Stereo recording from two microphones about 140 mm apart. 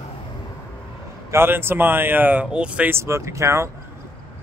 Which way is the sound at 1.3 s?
15° right (ahead or behind).